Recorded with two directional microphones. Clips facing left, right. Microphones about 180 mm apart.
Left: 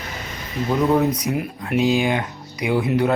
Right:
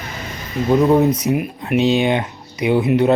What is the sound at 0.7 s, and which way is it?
Speech, 25° right (ahead or behind).